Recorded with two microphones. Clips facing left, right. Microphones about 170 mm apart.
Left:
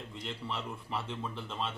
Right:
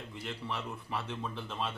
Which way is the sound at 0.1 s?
5° right (ahead or behind).